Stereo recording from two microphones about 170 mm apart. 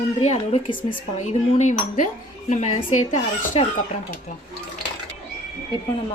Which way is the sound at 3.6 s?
35° left (ahead or behind).